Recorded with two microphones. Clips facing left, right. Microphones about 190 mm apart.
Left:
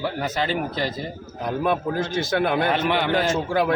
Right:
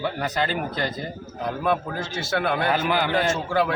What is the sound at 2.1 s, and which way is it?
Speech, 20° left (ahead or behind).